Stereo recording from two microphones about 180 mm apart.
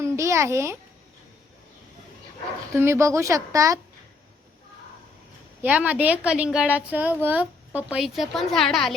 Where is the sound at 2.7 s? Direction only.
15° right (ahead or behind).